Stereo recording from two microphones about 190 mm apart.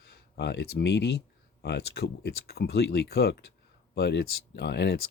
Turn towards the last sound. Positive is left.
turn(degrees=60)  # may be behind; listen again after turning